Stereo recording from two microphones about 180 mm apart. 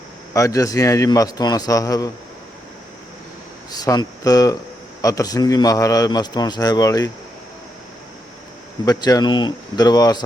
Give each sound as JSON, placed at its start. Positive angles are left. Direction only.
{"t": 0.3, "sound": "a man's voice", "side_deg": 20}
{"t": 3.7, "sound": "a man's voice", "side_deg": 20}
{"t": 8.8, "sound": "a man's voice", "side_deg": 20}